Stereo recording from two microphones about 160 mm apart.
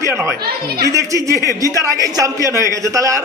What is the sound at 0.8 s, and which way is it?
A man's voice, 20° right (ahead or behind).